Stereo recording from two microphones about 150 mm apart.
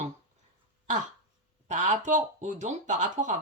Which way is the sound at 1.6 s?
50° right (ahead or behind).